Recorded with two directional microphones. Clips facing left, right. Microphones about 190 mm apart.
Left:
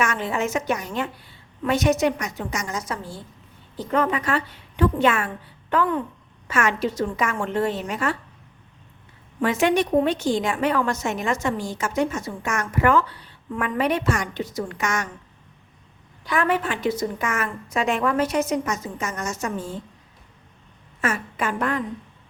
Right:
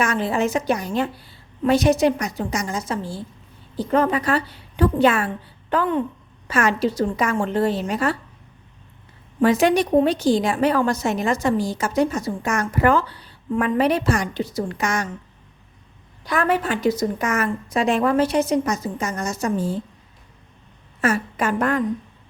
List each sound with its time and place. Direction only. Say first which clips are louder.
0.0 s a woman's voice: right 3 dB; 35° right (ahead or behind)
9.4 s a woman's voice: right 3 dB; 35° right (ahead or behind)
16.2 s a woman's voice: right 2 dB; 40° right (ahead or behind)
21.0 s a woman's voice: right 4 dB; 40° right (ahead or behind)